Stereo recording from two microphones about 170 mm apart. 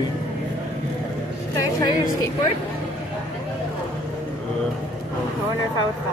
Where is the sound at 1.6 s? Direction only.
25° left (ahead or behind).